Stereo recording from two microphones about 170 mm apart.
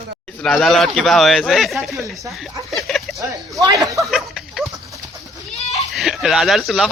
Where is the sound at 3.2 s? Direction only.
20° right (ahead or behind).